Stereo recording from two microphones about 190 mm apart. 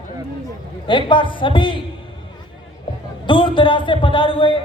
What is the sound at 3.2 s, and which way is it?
Speech, 25° left (ahead or behind).